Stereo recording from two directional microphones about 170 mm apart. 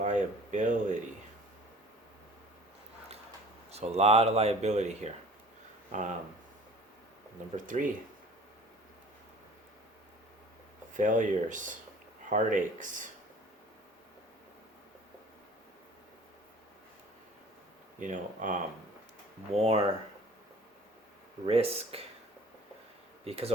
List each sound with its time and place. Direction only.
0.0 s a sound: 45° right (ahead or behind)
3.7 s speech: 40° right (ahead or behind)
7.5 s speech: 50° right (ahead or behind)
10.9 s speech: 50° right (ahead or behind)
18.0 s speech: 50° right (ahead or behind)
19.5 s speech: 35° right (ahead or behind)
21.4 s speech: 35° right (ahead or behind)
23.2 s speech: 35° right (ahead or behind)